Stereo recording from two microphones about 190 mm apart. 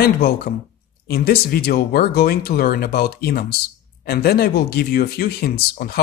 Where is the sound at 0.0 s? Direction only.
55° left (ahead or behind).